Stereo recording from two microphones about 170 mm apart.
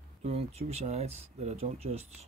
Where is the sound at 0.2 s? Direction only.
35° right (ahead or behind).